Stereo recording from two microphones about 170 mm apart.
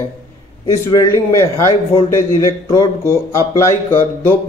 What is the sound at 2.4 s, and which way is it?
Speech, 20° left (ahead or behind).